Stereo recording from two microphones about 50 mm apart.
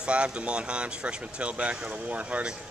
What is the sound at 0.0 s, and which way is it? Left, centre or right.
Speech, right.